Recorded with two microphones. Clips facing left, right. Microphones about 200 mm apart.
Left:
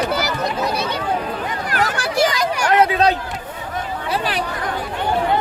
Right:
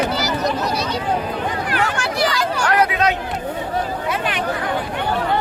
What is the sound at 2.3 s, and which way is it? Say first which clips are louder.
Chatter: left 1 dB; 15° left (ahead or behind).